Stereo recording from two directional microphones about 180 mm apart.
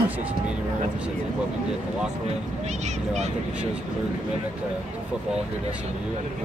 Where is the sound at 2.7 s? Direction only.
40° right (ahead or behind).